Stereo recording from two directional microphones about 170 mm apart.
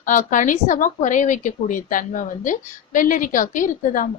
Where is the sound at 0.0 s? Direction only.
50° left (ahead or behind).